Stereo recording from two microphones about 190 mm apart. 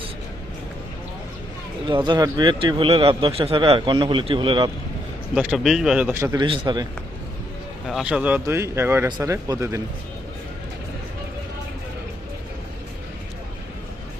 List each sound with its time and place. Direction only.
1.9 s a man's voice: 25° right (ahead or behind)
5.3 s speech: 5° right (ahead or behind)
6.4 s a man's voice: 25° right (ahead or behind)
7.9 s speech: 5° right (ahead or behind)